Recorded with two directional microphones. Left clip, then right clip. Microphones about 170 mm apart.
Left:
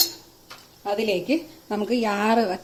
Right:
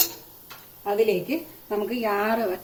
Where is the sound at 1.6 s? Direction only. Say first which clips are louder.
Left 1 dB; 50° left (ahead or behind).